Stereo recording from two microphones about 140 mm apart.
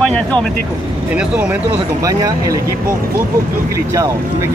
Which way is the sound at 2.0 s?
25° right (ahead or behind).